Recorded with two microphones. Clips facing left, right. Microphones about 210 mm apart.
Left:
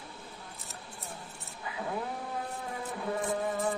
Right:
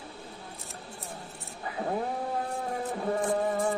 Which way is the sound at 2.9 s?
45° right (ahead or behind).